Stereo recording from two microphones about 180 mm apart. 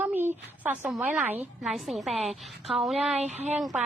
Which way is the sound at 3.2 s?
40° right (ahead or behind).